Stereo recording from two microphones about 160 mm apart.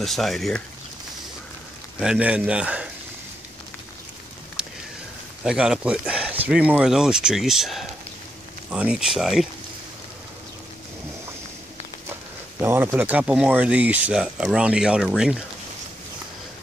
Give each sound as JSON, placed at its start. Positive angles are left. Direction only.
{"t": 0.0, "sound": "speech", "side_deg": 0}
{"t": 2.0, "sound": "speech", "side_deg": -5}
{"t": 4.6, "sound": "a sound", "side_deg": -5}
{"t": 5.4, "sound": "speech", "side_deg": -5}
{"t": 12.5, "sound": "speech", "side_deg": -15}